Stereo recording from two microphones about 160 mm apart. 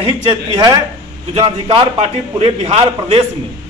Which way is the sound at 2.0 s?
40° right (ahead or behind).